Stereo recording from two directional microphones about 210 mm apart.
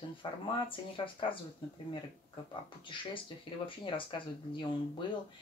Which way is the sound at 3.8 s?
25° left (ahead or behind).